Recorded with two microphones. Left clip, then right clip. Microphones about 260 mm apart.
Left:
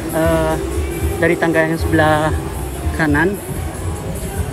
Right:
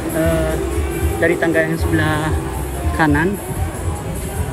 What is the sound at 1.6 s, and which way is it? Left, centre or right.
Speech, centre.